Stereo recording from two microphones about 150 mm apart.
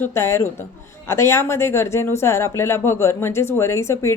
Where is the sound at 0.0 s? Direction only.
15° left (ahead or behind).